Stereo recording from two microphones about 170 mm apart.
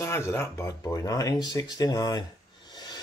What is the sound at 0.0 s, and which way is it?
Speech, 15° left (ahead or behind).